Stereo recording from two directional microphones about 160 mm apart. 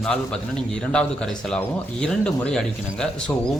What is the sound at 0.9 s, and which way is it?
A man's voice, 5° left (ahead or behind).